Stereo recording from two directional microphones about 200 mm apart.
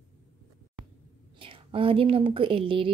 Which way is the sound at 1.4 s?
25° right (ahead or behind).